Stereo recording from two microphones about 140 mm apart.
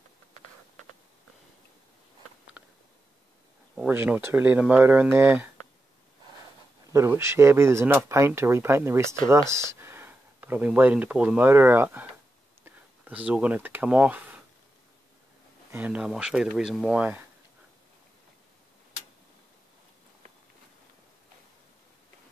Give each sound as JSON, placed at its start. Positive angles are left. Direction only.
{"t": 2.6, "sound": "a sound", "side_deg": -10}
{"t": 3.7, "sound": "speech", "side_deg": -10}
{"t": 6.9, "sound": "speech", "side_deg": -20}
{"t": 15.7, "sound": "speech", "side_deg": -10}